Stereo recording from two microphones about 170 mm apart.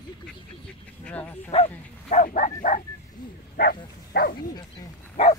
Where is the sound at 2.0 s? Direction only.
50° left (ahead or behind).